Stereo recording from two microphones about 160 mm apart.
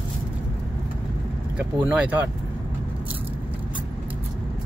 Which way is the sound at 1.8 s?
10° right (ahead or behind).